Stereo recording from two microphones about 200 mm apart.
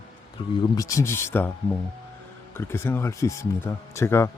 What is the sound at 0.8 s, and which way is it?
Speech, 15° left (ahead or behind).